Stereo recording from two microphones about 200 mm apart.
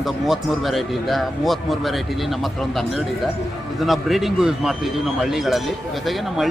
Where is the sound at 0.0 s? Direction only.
Centre (ahead or behind).